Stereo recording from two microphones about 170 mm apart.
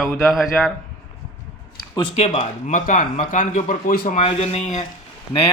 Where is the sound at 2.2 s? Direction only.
40° left (ahead or behind).